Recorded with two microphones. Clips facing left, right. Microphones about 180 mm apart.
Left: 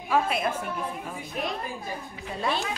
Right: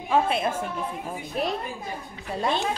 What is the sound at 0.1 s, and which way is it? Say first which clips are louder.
Speech: right 2 dB; 25° right (ahead or behind).